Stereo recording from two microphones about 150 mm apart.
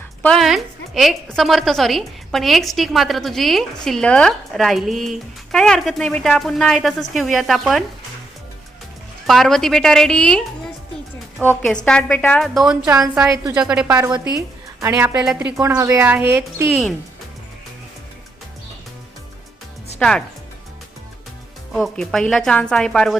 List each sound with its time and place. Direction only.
0.2 s a woman's voice: 5° left (ahead or behind)
9.2 s a woman's voice: centre (ahead or behind)
14.8 s a woman's voice: 20° right (ahead or behind)
15.4 s a woman's voice: 10° right (ahead or behind)
20.0 s a woman's voice: 5° left (ahead or behind)
21.7 s a woman's voice: centre (ahead or behind)